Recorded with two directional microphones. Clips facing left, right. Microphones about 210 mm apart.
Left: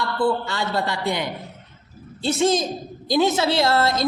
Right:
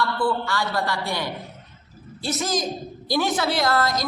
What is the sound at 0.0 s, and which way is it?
A woman's voice, 20° left (ahead or behind).